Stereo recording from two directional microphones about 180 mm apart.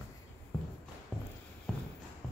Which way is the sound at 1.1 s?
5° left (ahead or behind).